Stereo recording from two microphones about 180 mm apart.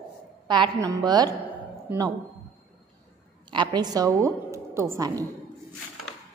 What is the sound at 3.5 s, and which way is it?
A woman's voice, 25° right (ahead or behind).